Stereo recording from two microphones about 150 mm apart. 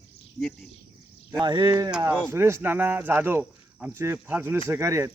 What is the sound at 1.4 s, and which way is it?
Speech, 30° right (ahead or behind).